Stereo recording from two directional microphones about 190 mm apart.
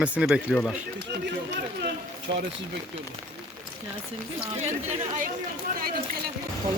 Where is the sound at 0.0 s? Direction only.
5° right (ahead or behind).